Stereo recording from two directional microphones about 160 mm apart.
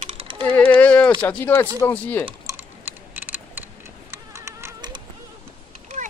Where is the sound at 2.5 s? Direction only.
20° right (ahead or behind).